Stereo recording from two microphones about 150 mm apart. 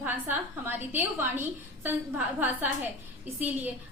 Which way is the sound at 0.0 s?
15° right (ahead or behind).